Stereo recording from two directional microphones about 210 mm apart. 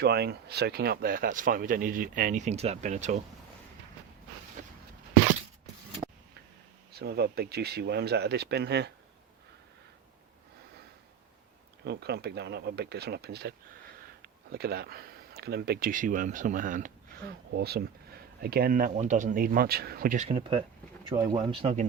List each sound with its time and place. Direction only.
0.0 s speech: 50° right (ahead or behind); by 3.2 s 35° right (ahead or behind)
6.9 s speech: 50° right (ahead or behind)
11.9 s speech: 50° right (ahead or behind)
14.5 s speech: 50° right (ahead or behind)
20.2 s speech: 25° right (ahead or behind)